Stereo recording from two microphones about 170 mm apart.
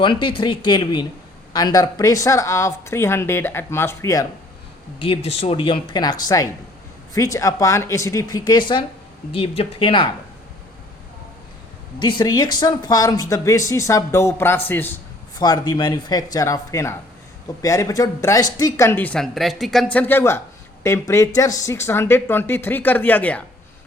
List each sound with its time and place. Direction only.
0.0 s speech: 30° left (ahead or behind)
4.9 s speech: 35° left (ahead or behind)
11.9 s speech: 25° left (ahead or behind)
15.4 s speech: 25° left (ahead or behind)